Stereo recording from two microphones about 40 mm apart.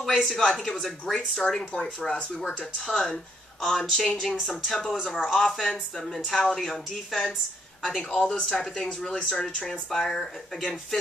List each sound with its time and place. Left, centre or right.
0.0 s speech: centre
1.7 s speech: left
2.9 s speech: centre
8.3 s speech: left
8.7 s speech: centre
9.1 s speech: left
9.7 s speech: centre